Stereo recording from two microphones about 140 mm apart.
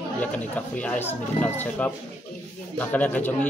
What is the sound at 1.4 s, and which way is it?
Speech, 55° left (ahead or behind).